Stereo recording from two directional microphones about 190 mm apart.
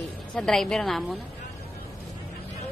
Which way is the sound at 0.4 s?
5° left (ahead or behind).